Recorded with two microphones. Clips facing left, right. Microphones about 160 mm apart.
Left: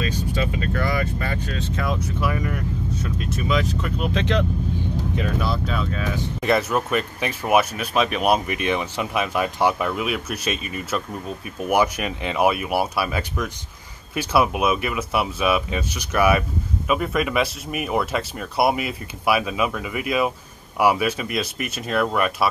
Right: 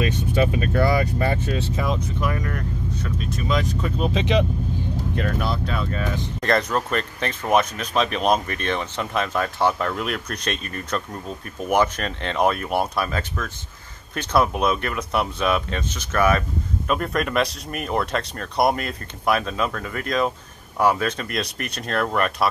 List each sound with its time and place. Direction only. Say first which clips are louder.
0.0 s vehicle: right 4 dB; 20° right (ahead or behind)
0.7 s speech: right 6 dB; 30° right (ahead or behind)
2.2 s speech: left 2 dB; 5° left (ahead or behind)
4.2 s speech: right 2 dB; 10° right (ahead or behind)
5.1 s speech: even; 5° left (ahead or behind)